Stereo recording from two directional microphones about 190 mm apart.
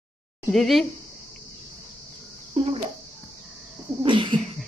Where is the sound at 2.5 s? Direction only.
30° right (ahead or behind).